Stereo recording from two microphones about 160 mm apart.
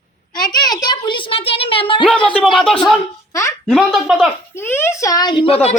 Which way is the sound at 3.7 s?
Centre (ahead or behind).